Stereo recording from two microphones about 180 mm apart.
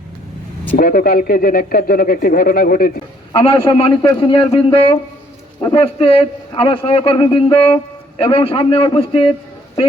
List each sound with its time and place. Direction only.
0.8 s speech: 50° left (ahead or behind)
3.3 s a man's voice: 30° left (ahead or behind)